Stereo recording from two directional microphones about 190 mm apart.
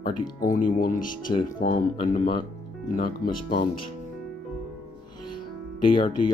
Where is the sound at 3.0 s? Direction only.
50° left (ahead or behind).